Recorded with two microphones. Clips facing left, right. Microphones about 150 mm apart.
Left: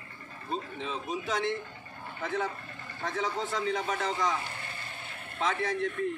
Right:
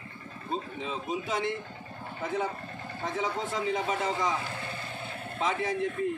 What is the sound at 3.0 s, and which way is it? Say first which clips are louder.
A man's voice: even; 5° right (ahead or behind).